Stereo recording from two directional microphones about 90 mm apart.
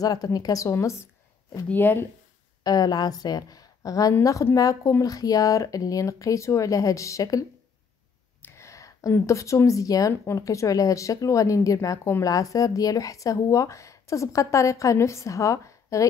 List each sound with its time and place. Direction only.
0.0 s speech: 45° left (ahead or behind)
1.7 s speech: 25° left (ahead or behind)
2.6 s a woman's voice: 50° left (ahead or behind)